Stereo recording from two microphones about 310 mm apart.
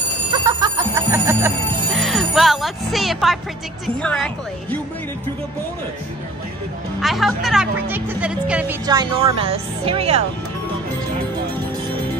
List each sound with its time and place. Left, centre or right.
0.4 s music: centre
3.8 s a woman's voice: centre
7.0 s speech: centre